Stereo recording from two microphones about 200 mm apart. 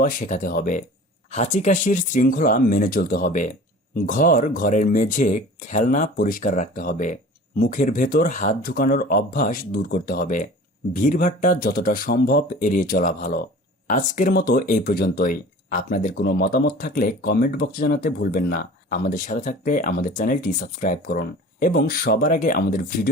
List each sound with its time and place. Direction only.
0.0 s speech: 45° left (ahead or behind)